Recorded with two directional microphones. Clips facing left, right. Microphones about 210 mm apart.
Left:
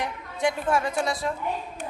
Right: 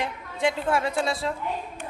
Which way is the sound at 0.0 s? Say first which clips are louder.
Even; 25° right (ahead or behind).